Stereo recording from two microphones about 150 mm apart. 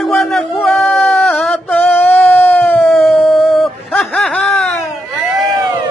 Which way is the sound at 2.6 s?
15° left (ahead or behind).